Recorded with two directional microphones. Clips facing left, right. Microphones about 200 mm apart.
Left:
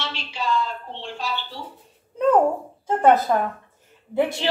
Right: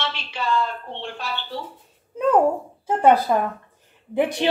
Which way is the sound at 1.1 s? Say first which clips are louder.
Left 5 dB; 60° right (ahead or behind).